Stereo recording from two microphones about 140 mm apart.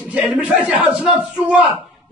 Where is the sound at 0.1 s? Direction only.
5° right (ahead or behind).